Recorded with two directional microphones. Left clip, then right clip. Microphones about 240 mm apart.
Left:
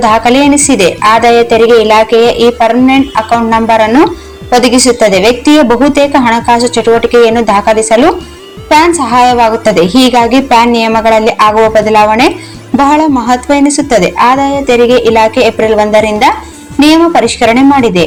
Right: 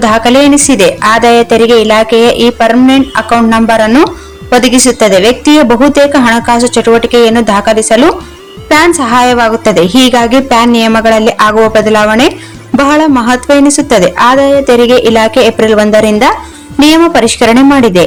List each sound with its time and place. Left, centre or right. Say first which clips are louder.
0.0 s a woman's voice: even; centre